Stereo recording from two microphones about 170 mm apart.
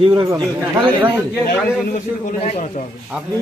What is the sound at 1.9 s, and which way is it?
Speech, 45° left (ahead or behind).